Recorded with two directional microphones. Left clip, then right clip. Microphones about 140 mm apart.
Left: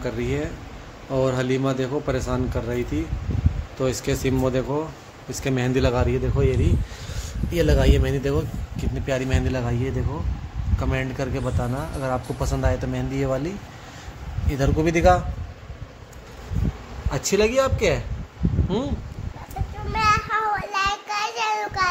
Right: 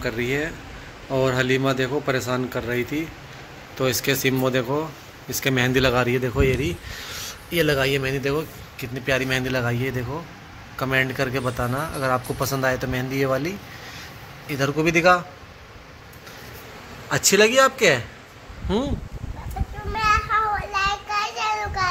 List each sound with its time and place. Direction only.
0.0 s speech: 5° left (ahead or behind)
7.5 s speech: 15° left (ahead or behind)
8.9 s speech: 10° left (ahead or behind)
14.5 s speech: 20° left (ahead or behind)
17.1 s speech: centre (ahead or behind)
20.1 s a sound: 30° left (ahead or behind)
20.7 s child singing: 40° left (ahead or behind)